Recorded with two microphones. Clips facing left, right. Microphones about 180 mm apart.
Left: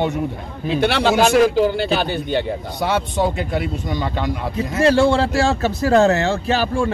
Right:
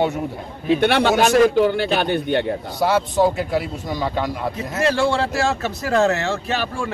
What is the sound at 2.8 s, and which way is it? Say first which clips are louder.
Speech: right 3 dB; centre (ahead or behind).